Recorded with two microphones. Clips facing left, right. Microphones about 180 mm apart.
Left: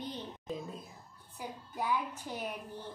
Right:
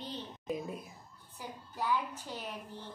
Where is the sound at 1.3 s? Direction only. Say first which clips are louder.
Left 2 dB; 10° left (ahead or behind).